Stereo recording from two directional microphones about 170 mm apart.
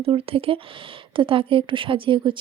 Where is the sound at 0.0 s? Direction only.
35° right (ahead or behind).